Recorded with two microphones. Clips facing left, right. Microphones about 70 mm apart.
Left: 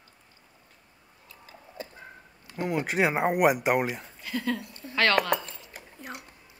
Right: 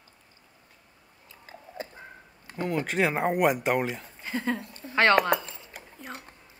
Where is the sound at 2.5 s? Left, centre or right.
Centre.